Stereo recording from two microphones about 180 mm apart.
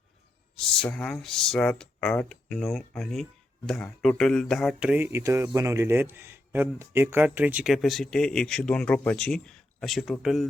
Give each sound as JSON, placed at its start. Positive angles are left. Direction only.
{"t": 0.6, "sound": "a man's voice", "side_deg": 5}